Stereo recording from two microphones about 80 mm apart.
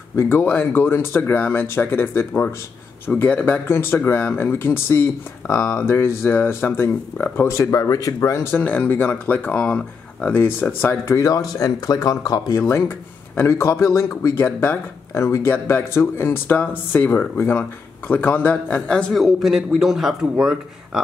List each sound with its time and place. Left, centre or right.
0.3 s speech: left
7.7 s a man's voice: left
8.5 s speech: left
11.1 s speech: left
12.6 s a man's voice: left
14.4 s speech: left
19.1 s speech: centre